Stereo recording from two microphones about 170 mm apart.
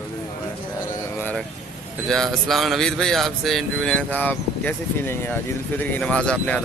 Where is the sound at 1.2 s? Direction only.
10° left (ahead or behind).